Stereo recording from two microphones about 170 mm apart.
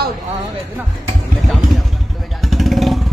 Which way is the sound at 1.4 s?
Centre (ahead or behind).